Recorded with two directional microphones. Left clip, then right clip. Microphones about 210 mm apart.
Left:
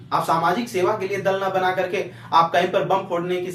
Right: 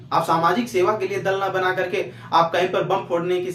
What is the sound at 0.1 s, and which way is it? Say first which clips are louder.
Speech: right 1 dB; 20° right (ahead or behind).